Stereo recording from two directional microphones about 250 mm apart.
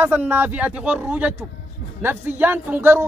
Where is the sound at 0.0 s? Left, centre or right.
Centre.